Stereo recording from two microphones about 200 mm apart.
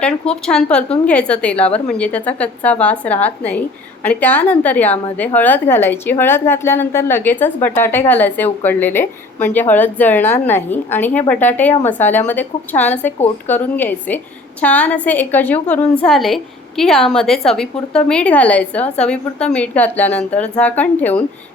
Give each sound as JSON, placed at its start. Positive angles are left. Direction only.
{"t": 0.0, "sound": "a woman's voice", "side_deg": 5}